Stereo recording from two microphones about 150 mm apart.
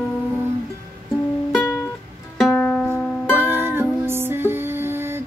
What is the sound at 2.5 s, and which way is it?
Music, 10° left (ahead or behind).